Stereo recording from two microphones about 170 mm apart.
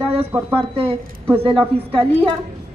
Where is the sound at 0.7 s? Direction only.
35° right (ahead or behind).